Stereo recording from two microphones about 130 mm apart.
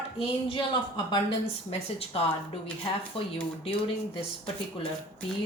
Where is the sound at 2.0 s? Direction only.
45° left (ahead or behind).